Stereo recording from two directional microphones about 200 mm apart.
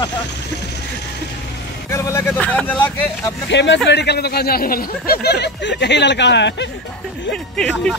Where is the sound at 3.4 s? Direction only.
60° left (ahead or behind).